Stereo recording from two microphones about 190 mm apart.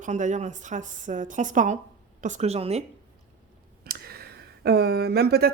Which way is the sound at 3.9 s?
55° right (ahead or behind).